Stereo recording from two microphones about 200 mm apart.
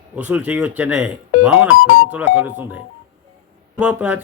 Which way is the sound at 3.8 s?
5° right (ahead or behind).